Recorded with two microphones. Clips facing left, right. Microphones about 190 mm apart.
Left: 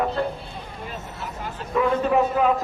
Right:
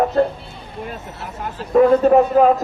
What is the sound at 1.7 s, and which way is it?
Speech, 45° right (ahead or behind).